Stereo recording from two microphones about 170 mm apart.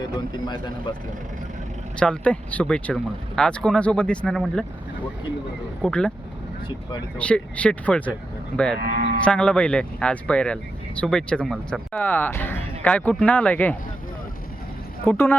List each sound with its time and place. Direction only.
0.4 s speech: 25° left (ahead or behind)
2.0 s speech: 5° left (ahead or behind)
5.8 s speech: 5° left (ahead or behind)
7.2 s speech: 5° left (ahead or behind)
8.8 s moo: 70° right (ahead or behind)
9.2 s speech: 5° left (ahead or behind)
15.0 s speech: 10° left (ahead or behind)